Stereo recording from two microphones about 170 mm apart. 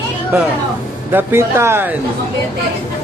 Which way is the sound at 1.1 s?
15° right (ahead or behind).